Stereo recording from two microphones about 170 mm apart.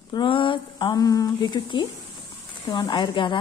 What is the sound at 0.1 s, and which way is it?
A woman's voice, 30° left (ahead or behind).